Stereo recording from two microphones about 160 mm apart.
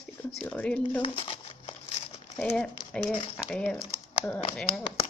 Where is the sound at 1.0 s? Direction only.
35° left (ahead or behind).